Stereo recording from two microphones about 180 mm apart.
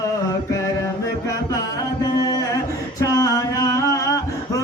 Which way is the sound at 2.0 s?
20° left (ahead or behind).